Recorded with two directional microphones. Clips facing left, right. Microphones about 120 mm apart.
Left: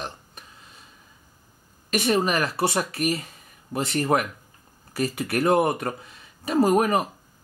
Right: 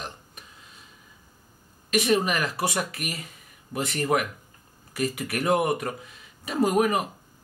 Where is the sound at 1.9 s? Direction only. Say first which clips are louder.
Left 1 dB; 35° left (ahead or behind).